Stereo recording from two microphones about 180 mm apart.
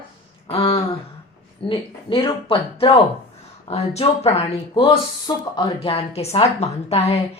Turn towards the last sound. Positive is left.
turn(degrees=35)  # may be behind; listen again after turning